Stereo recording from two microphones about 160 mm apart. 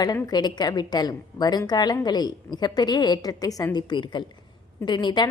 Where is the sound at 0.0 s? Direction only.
25° left (ahead or behind).